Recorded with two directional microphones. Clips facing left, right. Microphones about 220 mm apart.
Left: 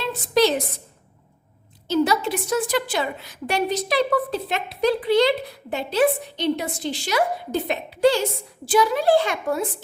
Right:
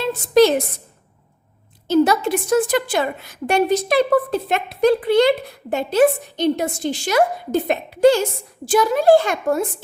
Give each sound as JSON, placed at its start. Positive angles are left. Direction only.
{"t": 0.0, "sound": "a woman's voice", "side_deg": -50}
{"t": 1.9, "sound": "a woman's voice", "side_deg": -50}